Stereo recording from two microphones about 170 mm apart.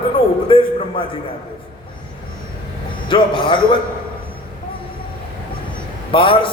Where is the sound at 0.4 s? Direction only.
30° left (ahead or behind).